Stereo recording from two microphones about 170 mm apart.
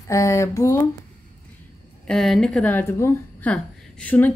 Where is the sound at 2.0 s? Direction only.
Centre (ahead or behind).